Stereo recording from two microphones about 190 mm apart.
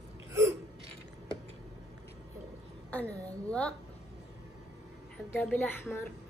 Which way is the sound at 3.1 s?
15° right (ahead or behind).